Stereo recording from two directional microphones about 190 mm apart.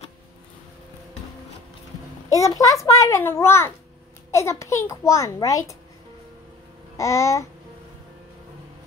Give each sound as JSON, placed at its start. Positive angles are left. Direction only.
{"t": 2.2, "sound": "a child's voice", "side_deg": 15}
{"t": 7.0, "sound": "a child's voice", "side_deg": 15}